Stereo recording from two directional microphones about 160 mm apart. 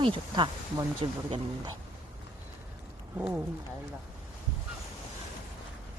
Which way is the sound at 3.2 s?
10° right (ahead or behind).